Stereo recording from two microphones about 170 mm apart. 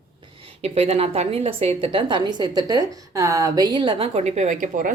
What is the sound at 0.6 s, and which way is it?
A woman's voice, 35° right (ahead or behind).